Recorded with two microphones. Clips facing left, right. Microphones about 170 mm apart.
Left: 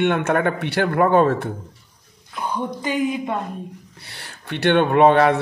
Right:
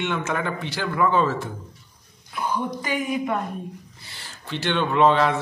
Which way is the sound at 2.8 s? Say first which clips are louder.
Left 3 dB; 25° left (ahead or behind).